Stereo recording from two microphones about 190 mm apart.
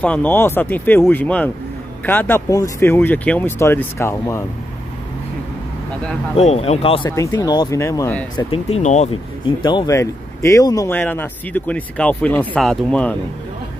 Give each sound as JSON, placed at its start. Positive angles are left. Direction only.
{"t": 0.0, "sound": "speech", "side_deg": 5}
{"t": 6.3, "sound": "speech", "side_deg": 30}
{"t": 7.1, "sound": "speech", "side_deg": 15}
{"t": 8.4, "sound": "speech", "side_deg": 30}
{"t": 9.6, "sound": "speech", "side_deg": 25}